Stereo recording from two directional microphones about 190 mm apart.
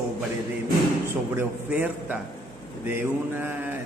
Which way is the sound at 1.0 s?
10° right (ahead or behind).